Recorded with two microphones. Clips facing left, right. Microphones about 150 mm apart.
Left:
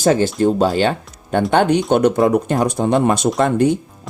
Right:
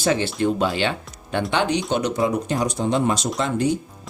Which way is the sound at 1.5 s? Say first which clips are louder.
Left 7 dB; 50° left (ahead or behind).